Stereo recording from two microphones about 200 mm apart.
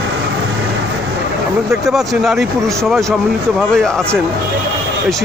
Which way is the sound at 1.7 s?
Centre (ahead or behind).